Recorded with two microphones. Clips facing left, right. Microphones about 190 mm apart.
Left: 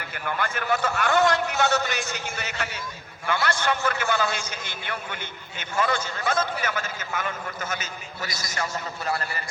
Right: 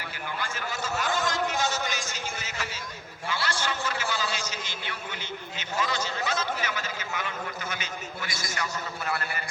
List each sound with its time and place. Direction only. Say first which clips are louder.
0.0 s a man's voice: left 5 dB; 55° left (ahead or behind); by 8.6 s 40° left (ahead or behind)